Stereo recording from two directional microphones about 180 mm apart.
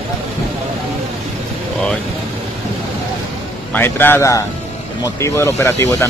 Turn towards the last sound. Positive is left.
turn(degrees=15)  # may be behind; listen again after turning